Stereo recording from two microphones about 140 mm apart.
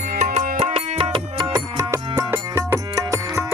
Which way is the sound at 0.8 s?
40° right (ahead or behind).